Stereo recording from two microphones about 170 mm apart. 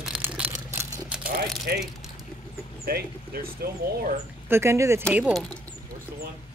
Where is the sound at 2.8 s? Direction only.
65° right (ahead or behind).